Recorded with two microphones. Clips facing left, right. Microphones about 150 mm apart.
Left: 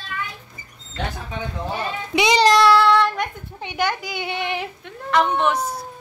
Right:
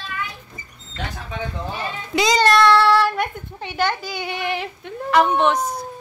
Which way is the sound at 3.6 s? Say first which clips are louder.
Right 1 dB; 15° left (ahead or behind).